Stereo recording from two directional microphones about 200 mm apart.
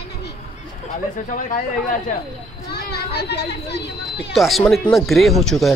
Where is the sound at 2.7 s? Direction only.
55° left (ahead or behind).